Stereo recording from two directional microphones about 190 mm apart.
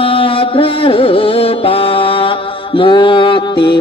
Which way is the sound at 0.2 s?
30° left (ahead or behind).